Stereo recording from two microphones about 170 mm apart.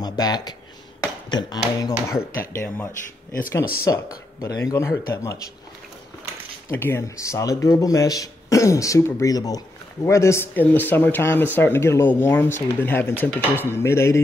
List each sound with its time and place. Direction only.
0.0 s a sound: 25° left (ahead or behind)
1.3 s speech: 25° left (ahead or behind)
6.7 s speech: 15° left (ahead or behind)